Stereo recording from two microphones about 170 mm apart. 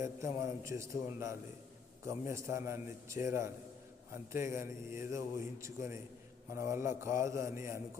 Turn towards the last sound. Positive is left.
turn(degrees=-15)  # may be behind; listen again after turning